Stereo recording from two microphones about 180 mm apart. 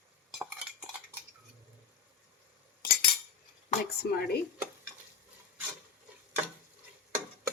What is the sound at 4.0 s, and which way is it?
Speech, 60° left (ahead or behind).